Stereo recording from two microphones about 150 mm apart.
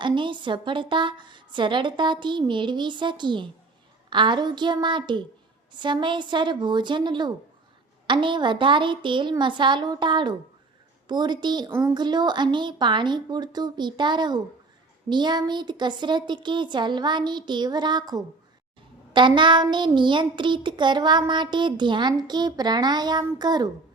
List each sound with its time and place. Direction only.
0.0 s child singing: 30° right (ahead or behind)
11.1 s a woman's voice: 30° right (ahead or behind)
15.1 s child singing: 30° right (ahead or behind)